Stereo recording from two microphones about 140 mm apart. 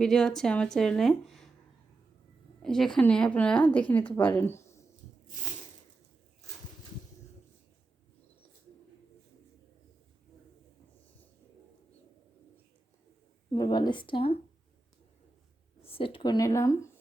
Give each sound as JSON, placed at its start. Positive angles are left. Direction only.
{"t": 0.0, "sound": "speech", "side_deg": 5}
{"t": 2.6, "sound": "a woman's voice", "side_deg": 5}
{"t": 4.4, "sound": "a sound", "side_deg": 15}
{"t": 13.5, "sound": "speech", "side_deg": 30}
{"t": 15.8, "sound": "speech", "side_deg": 40}